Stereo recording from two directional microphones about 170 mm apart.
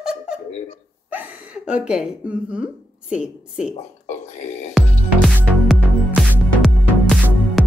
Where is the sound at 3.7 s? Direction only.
40° left (ahead or behind).